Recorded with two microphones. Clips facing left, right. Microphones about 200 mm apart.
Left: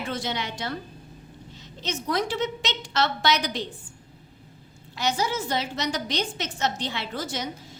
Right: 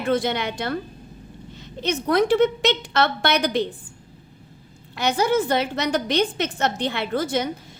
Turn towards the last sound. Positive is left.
turn(degrees=-60)  # may be behind; listen again after turning